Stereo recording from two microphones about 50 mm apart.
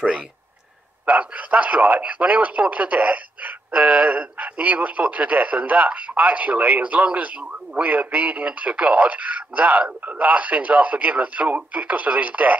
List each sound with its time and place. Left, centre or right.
1.0 s speech: right